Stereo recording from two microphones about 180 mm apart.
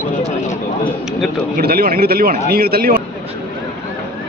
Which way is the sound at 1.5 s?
55° right (ahead or behind).